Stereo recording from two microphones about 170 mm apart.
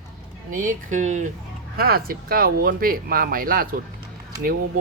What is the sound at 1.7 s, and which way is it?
Speech, 60° right (ahead or behind).